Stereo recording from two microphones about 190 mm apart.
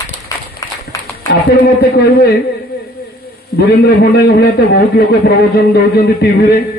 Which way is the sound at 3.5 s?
55° left (ahead or behind).